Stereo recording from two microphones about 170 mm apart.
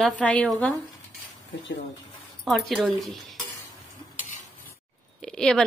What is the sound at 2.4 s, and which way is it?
Speech, centre (ahead or behind).